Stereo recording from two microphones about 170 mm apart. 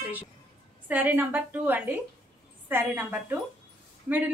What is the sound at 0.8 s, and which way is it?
A woman's voice, 10° right (ahead or behind).